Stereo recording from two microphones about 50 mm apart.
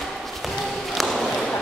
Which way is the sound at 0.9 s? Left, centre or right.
Centre.